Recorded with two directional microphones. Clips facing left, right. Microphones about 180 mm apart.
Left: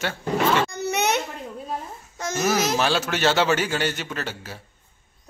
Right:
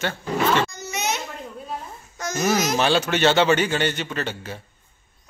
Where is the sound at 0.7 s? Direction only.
65° left (ahead or behind).